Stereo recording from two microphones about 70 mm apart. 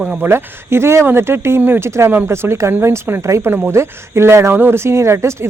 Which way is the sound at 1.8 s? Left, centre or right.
Right.